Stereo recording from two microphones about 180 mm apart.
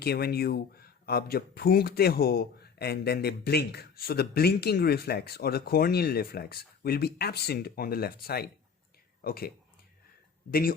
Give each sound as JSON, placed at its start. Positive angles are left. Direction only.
{"t": 0.0, "sound": "speech", "side_deg": 60}
{"t": 10.5, "sound": "speech", "side_deg": 55}